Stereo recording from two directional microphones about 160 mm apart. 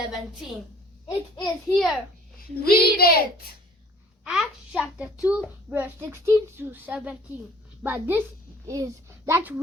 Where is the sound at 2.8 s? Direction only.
75° left (ahead or behind).